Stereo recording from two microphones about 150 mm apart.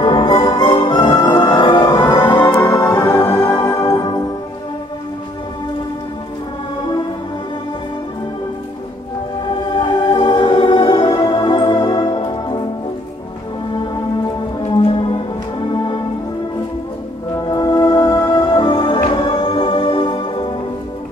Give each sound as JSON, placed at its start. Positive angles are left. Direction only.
{"t": 0.0, "sound": "music", "side_deg": 35}
{"t": 2.6, "sound": "music", "side_deg": 20}
{"t": 9.8, "sound": "music", "side_deg": 30}
{"t": 14.7, "sound": "music", "side_deg": 30}
{"t": 17.5, "sound": "music", "side_deg": 30}